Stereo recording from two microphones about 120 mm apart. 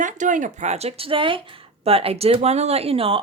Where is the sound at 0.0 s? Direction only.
90° right.